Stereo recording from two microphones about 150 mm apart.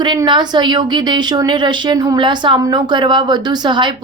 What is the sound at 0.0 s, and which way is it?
A woman's voice, 30° right (ahead or behind).